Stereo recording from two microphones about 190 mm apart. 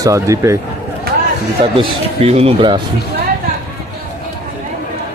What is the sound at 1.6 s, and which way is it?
Speech, 30° right (ahead or behind).